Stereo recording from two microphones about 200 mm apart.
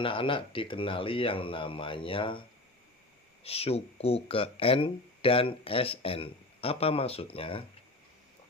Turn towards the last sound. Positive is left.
turn(degrees=25)  # may be behind; listen again after turning